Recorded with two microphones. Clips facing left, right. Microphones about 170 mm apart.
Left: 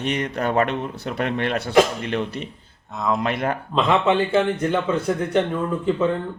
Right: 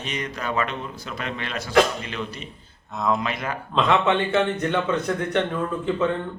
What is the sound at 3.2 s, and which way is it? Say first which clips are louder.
Speech: left 5 dB; 60° left (ahead or behind).